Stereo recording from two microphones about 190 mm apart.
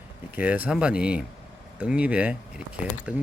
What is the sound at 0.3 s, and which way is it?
Speech, 10° right (ahead or behind).